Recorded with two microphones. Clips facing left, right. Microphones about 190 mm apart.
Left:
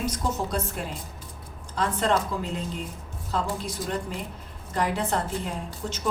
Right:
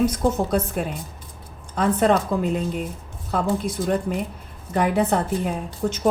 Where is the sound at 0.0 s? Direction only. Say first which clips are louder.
Right 8 dB; 60° right (ahead or behind).